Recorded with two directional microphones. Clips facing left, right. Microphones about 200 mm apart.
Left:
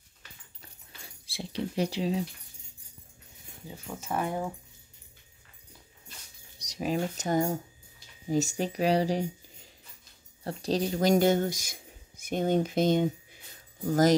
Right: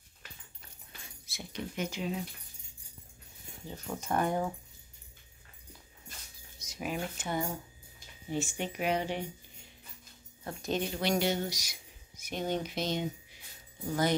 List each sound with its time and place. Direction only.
1.2 s speech: 30° left (ahead or behind)
3.6 s speech: 5° left (ahead or behind)
6.6 s speech: 35° left (ahead or behind)
10.4 s speech: 35° left (ahead or behind)